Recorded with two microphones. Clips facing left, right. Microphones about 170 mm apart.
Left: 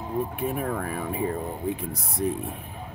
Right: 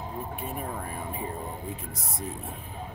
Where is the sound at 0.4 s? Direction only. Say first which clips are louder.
Left 7 dB; 70° left (ahead or behind).